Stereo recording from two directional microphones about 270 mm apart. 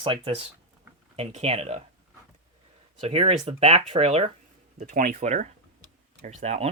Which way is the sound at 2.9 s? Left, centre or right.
Right.